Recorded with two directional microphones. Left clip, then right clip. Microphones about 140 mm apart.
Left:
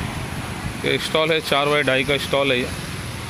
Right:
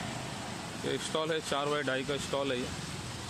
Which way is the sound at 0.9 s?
25° left (ahead or behind).